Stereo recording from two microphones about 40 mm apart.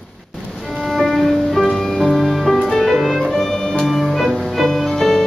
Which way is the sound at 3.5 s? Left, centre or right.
Centre.